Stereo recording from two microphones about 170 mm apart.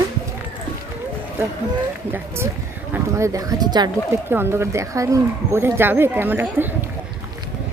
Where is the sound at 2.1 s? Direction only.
15° right (ahead or behind).